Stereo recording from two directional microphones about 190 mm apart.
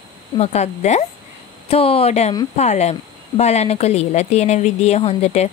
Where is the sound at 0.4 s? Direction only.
35° left (ahead or behind).